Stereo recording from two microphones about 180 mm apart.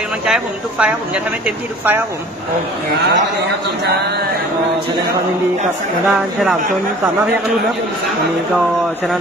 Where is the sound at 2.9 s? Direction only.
65° right (ahead or behind).